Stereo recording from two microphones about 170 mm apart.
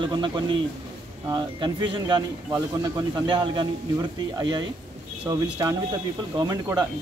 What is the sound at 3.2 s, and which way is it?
Speech, 25° right (ahead or behind).